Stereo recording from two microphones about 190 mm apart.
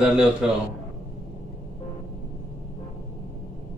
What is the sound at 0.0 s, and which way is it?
Speech, 5° right (ahead or behind).